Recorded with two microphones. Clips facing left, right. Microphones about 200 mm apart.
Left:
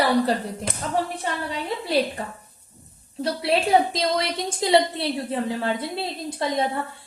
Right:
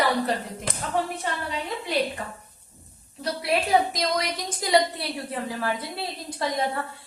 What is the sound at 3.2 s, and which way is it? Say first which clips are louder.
A woman's voice: left 3 dB; 30° left (ahead or behind).